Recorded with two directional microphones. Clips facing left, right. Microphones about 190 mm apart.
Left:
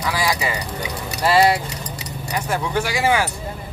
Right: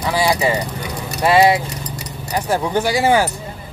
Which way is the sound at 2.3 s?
35° right (ahead or behind).